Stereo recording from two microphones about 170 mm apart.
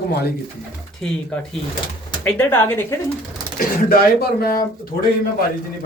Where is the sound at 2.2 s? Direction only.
10° left (ahead or behind).